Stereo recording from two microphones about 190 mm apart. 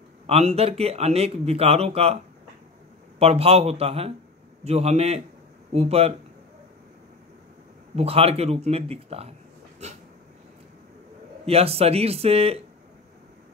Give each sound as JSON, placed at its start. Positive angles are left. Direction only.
{"t": 0.3, "sound": "speech", "side_deg": -35}
{"t": 3.2, "sound": "speech", "side_deg": -30}
{"t": 7.9, "sound": "speech", "side_deg": -30}
{"t": 11.4, "sound": "speech", "side_deg": -30}